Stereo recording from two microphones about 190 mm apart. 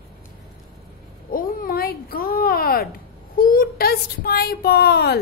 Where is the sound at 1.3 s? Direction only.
50° left (ahead or behind).